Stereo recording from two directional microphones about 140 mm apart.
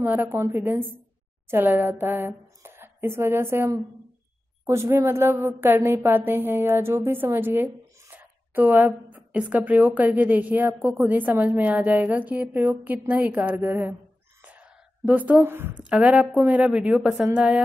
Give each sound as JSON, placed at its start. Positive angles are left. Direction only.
{"t": 0.0, "sound": "a woman's voice", "side_deg": -15}
{"t": 14.4, "sound": "a sound", "side_deg": -10}
{"t": 15.8, "sound": "a woman's voice", "side_deg": -10}